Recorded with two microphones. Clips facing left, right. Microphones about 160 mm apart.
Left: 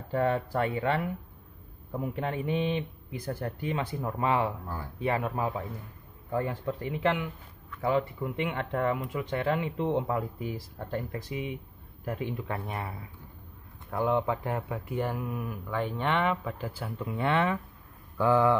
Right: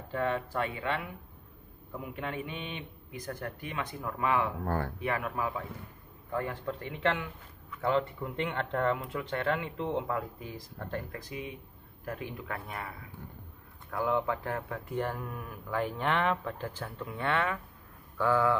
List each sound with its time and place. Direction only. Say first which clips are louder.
0.1 s speech: left 4 dB; 35° left (ahead or behind)
4.6 s speech: right 7 dB; 65° right (ahead or behind)
5.0 s speech: left 3 dB; 30° left (ahead or behind); by 15.5 s 10° left (ahead or behind)
15.7 s speech: left 1 dB; centre (ahead or behind)
17.0 s speech: left 4 dB; 20° left (ahead or behind)